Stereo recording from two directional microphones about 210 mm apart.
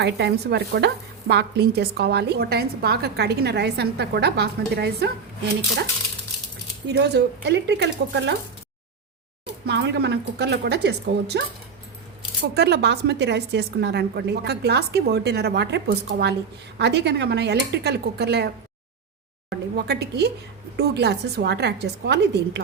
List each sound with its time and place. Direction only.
0.0 s speech: 50° right (ahead or behind)
6.8 s speech: 55° right (ahead or behind)
9.6 s speech: 55° right (ahead or behind)
12.5 s speech: 50° right (ahead or behind)